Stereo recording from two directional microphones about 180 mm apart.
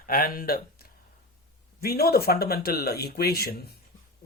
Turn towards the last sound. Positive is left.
turn(degrees=60)  # may be behind; listen again after turning